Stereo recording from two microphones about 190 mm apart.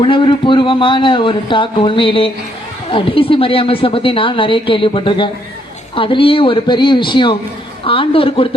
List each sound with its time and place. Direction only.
0.0 s speech: 25° left (ahead or behind)